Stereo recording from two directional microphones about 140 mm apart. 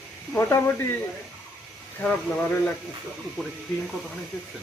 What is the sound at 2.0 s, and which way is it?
Speech, 10° left (ahead or behind).